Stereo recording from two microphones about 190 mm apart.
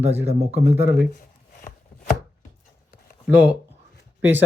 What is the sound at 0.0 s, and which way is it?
Speech, 35° right (ahead or behind).